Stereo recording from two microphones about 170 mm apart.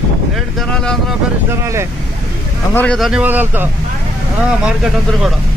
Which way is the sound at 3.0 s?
5° right (ahead or behind).